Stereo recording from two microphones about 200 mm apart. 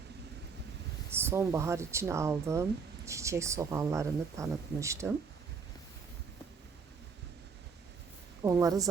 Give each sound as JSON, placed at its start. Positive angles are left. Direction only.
{"t": 1.1, "sound": "speech", "side_deg": -10}
{"t": 8.4, "sound": "speech", "side_deg": -15}